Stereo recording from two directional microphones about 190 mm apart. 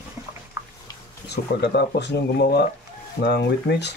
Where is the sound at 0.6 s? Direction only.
15° right (ahead or behind).